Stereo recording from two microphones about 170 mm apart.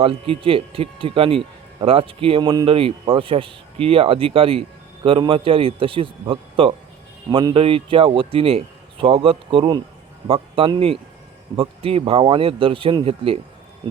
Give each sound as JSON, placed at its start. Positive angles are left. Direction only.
{"t": 0.0, "sound": "speech", "side_deg": -35}